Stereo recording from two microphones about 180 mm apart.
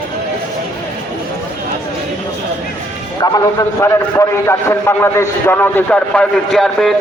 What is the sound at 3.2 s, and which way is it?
A man's voice, 20° left (ahead or behind).